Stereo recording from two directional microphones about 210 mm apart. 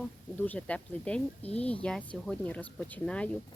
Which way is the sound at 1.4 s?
30° left (ahead or behind).